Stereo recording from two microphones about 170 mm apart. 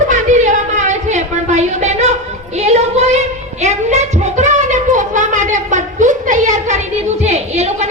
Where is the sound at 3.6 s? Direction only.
40° right (ahead or behind).